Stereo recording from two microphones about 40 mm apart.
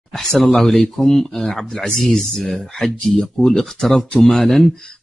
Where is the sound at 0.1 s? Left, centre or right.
Centre.